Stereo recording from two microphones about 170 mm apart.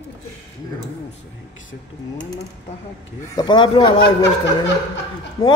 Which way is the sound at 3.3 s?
25° left (ahead or behind).